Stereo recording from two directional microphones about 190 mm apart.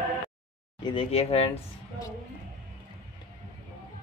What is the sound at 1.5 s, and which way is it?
Speech, 15° left (ahead or behind).